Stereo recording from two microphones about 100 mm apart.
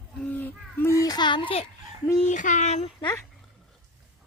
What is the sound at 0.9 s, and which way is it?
Speech, 40° left (ahead or behind).